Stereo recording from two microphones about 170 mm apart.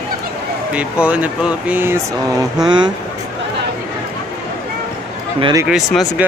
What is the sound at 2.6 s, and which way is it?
Speech, 25° right (ahead or behind).